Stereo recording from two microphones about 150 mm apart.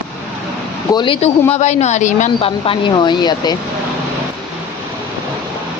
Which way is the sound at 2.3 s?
35° left (ahead or behind).